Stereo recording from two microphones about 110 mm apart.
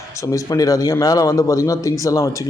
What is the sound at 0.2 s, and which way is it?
Speech, 30° left (ahead or behind).